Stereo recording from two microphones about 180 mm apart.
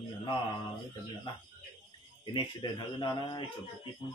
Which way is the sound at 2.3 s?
25° left (ahead or behind).